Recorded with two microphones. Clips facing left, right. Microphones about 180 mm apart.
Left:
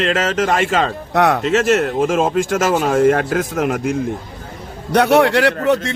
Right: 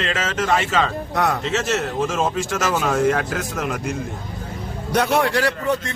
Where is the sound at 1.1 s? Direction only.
75° left (ahead or behind).